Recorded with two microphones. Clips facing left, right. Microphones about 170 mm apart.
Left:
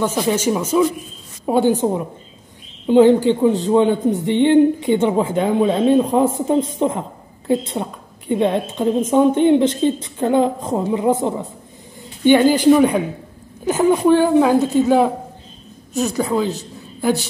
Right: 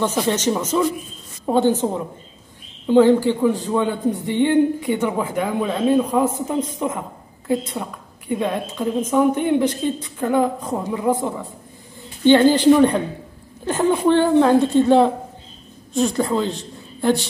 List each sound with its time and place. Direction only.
0.0 s a woman's voice: 10° left (ahead or behind)